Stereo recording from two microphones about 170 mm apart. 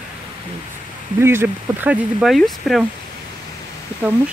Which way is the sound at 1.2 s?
15° right (ahead or behind).